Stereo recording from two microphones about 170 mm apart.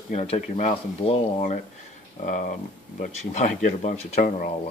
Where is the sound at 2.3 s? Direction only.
50° left (ahead or behind).